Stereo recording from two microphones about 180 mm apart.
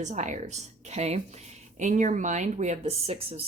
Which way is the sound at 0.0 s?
40° right (ahead or behind).